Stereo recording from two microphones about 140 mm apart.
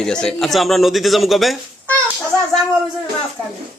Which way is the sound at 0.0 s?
5° left (ahead or behind).